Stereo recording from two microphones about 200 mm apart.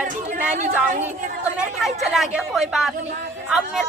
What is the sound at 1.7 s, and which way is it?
A woman's voice, centre (ahead or behind).